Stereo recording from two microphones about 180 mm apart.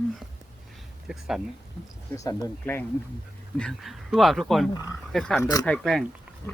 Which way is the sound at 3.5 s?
Centre (ahead or behind).